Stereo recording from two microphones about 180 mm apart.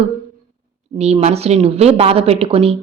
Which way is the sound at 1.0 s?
35° right (ahead or behind).